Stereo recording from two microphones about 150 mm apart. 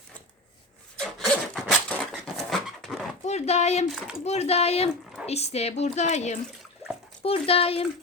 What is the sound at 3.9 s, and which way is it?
Speech, centre (ahead or behind).